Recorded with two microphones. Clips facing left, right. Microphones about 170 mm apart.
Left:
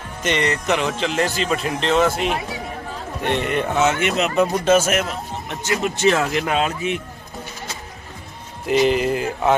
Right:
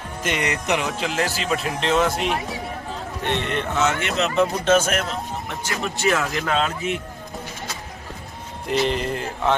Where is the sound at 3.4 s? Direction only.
10° left (ahead or behind).